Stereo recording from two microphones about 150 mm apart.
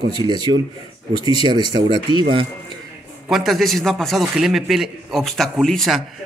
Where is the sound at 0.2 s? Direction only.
30° right (ahead or behind).